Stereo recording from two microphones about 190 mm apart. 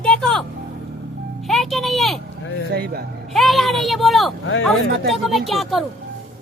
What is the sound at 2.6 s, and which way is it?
Speech, 55° right (ahead or behind).